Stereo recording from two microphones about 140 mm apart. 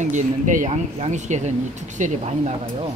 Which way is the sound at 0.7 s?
55° right (ahead or behind).